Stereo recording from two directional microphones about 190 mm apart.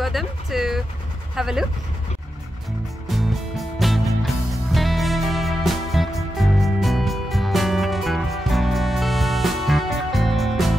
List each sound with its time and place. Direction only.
0.0 s a sound: centre (ahead or behind)
1.3 s speech: centre (ahead or behind)
3.1 s music: centre (ahead or behind)